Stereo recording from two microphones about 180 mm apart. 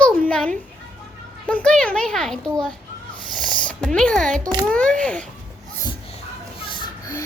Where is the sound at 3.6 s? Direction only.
5° left (ahead or behind).